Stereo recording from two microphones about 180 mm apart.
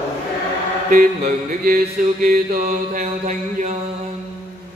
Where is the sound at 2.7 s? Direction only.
40° right (ahead or behind).